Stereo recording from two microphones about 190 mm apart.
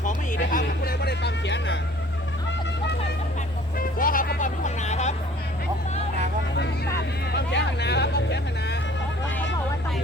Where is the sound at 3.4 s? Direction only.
45° left (ahead or behind).